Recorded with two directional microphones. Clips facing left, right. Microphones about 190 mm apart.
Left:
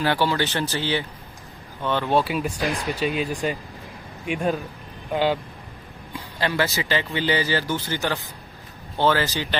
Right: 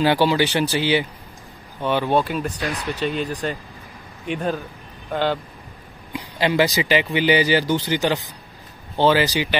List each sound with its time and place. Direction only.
0.0 s speech: 15° right (ahead or behind)
2.0 s speech: 5° left (ahead or behind)
6.1 s speech: 15° right (ahead or behind)